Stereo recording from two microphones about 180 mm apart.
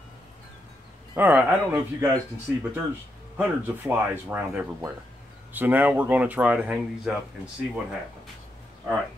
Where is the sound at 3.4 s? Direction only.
10° right (ahead or behind).